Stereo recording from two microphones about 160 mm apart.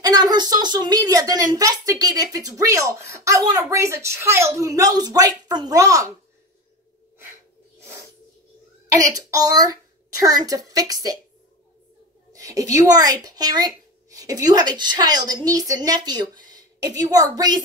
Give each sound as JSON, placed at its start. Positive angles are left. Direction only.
{"t": 0.0, "sound": "a woman's voice", "side_deg": -25}
{"t": 7.8, "sound": "snake", "side_deg": -15}
{"t": 8.9, "sound": "speech", "side_deg": -20}
{"t": 12.3, "sound": "a sound", "side_deg": -20}
{"t": 12.7, "sound": "speech", "side_deg": -25}